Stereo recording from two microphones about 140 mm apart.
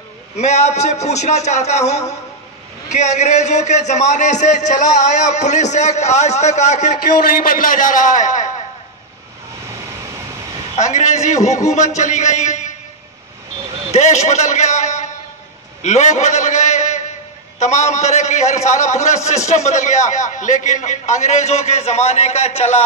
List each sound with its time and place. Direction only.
0.4 s a man's voice: 55° left (ahead or behind)
10.8 s a man's voice: 55° left (ahead or behind)
13.9 s a man's voice: 55° left (ahead or behind)
15.8 s a sound: 55° left (ahead or behind)
17.6 s a man's voice: 55° left (ahead or behind)